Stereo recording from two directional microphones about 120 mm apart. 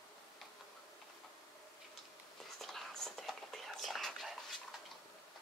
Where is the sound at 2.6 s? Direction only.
5° left (ahead or behind).